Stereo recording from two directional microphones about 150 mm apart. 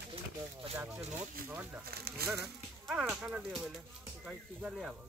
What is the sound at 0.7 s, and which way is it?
Speech, 15° right (ahead or behind).